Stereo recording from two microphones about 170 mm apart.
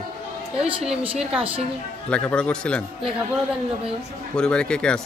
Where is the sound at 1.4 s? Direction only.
35° right (ahead or behind).